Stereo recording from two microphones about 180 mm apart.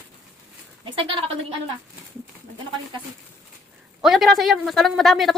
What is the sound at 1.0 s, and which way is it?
Speech, 30° right (ahead or behind).